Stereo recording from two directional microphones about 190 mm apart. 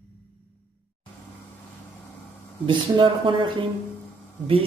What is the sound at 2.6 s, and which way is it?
Speech, 25° right (ahead or behind).